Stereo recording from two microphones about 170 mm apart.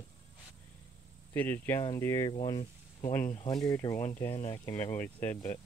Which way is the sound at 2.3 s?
30° left (ahead or behind).